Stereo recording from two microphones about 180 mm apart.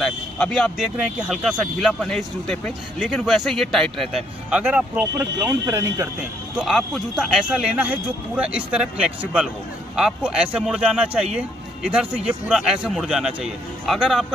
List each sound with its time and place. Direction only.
0.0 s speech: 5° left (ahead or behind); by 6.0 s 15° right (ahead or behind)
6.5 s speech: centre (ahead or behind)